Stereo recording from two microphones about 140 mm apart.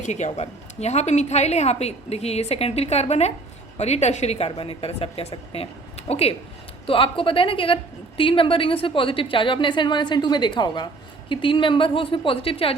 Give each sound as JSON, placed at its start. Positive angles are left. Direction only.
{"t": 0.0, "sound": "a woman's voice", "side_deg": 55}